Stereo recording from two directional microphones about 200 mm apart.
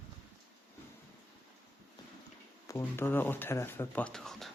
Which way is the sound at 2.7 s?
10° left (ahead or behind).